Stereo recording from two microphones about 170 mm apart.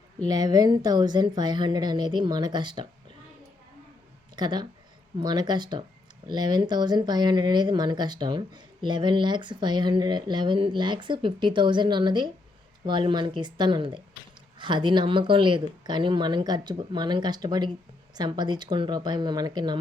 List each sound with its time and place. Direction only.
0.3 s speech: 25° right (ahead or behind)
4.4 s speech: 25° right (ahead or behind)